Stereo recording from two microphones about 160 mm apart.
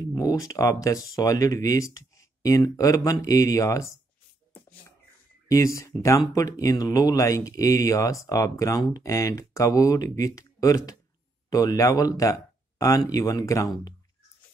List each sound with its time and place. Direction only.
0.0 s speech: 25° left (ahead or behind)
5.5 s speech: 20° left (ahead or behind)